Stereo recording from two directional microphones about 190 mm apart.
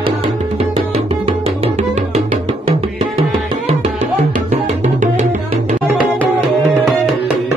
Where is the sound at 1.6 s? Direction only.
35° right (ahead or behind).